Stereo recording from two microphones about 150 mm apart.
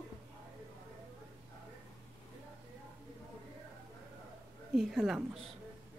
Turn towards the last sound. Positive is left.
turn(degrees=0)  # may be behind; listen again after turning